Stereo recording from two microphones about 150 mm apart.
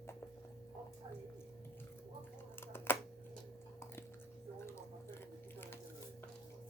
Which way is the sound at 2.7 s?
15° left (ahead or behind).